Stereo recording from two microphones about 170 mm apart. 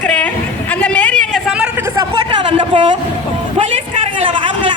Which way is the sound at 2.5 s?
30° right (ahead or behind).